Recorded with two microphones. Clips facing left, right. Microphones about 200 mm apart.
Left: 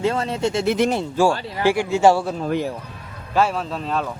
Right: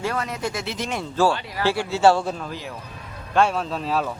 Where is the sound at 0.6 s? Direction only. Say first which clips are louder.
Left 11 dB; 55° left (ahead or behind).